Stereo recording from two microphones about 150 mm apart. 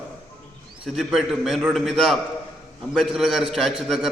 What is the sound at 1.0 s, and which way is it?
A man's voice, centre (ahead or behind).